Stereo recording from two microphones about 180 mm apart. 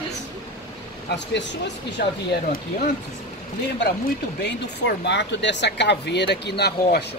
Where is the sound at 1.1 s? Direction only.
75° left (ahead or behind).